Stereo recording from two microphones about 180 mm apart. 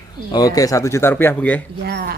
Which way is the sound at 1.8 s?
60° right (ahead or behind).